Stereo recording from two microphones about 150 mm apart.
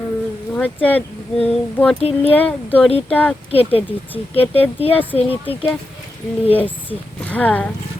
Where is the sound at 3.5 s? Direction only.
40° left (ahead or behind).